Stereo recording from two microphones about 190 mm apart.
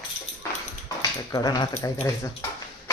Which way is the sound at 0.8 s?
20° left (ahead or behind).